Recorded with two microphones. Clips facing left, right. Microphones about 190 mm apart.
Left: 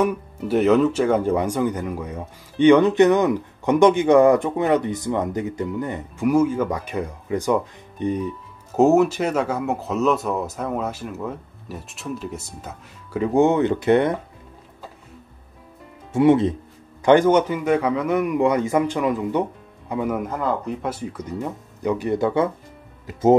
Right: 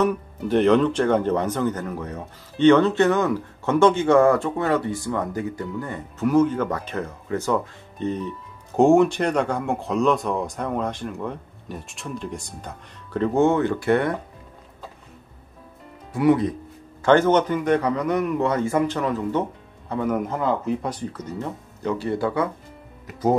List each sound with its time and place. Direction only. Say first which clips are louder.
0.0 s speech: even; 5° left (ahead or behind)
16.1 s speech: left 3 dB; 25° left (ahead or behind)
17.0 s speech: left 2 dB; 15° left (ahead or behind)